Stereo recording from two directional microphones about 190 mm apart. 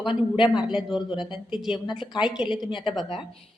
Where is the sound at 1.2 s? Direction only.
Centre (ahead or behind).